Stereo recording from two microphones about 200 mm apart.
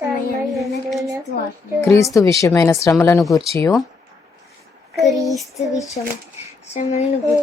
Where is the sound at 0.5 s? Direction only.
Centre (ahead or behind).